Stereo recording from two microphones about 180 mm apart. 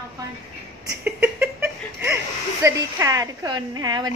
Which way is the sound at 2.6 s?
15° right (ahead or behind).